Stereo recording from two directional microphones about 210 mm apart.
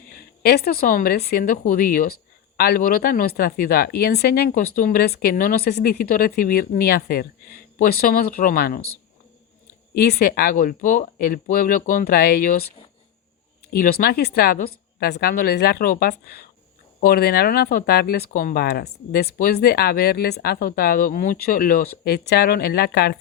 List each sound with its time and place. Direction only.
0.1 s a woman's voice: 50° left (ahead or behind)
9.9 s a woman's voice: 50° left (ahead or behind)
13.7 s a woman's voice: 45° left (ahead or behind)